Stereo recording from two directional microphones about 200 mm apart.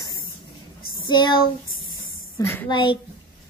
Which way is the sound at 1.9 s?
15° left (ahead or behind).